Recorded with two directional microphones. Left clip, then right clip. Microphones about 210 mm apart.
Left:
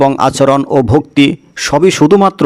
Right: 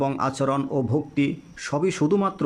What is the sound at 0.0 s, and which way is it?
Speech, 35° left (ahead or behind).